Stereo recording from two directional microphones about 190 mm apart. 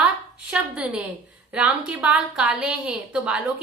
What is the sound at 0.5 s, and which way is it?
A woman's voice, 5° right (ahead or behind).